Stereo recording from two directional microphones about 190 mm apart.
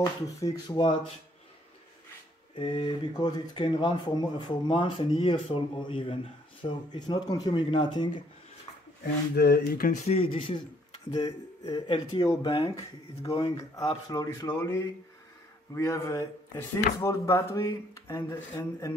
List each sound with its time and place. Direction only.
0.0 s speech: 20° left (ahead or behind)
2.5 s speech: 25° left (ahead or behind)
9.3 s speech: 55° left (ahead or behind)
10.0 s speech: 30° left (ahead or behind)